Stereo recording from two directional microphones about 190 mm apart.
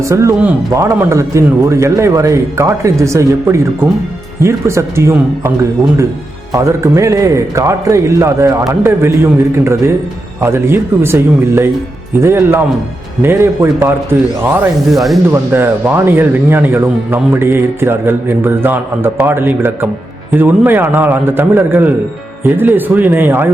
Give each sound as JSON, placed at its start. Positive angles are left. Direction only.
{"t": 0.0, "sound": "speech", "side_deg": -15}
{"t": 6.5, "sound": "speech", "side_deg": -15}
{"t": 10.4, "sound": "speech", "side_deg": -10}
{"t": 14.8, "sound": "speech", "side_deg": 0}
{"t": 15.3, "sound": "speech", "side_deg": -10}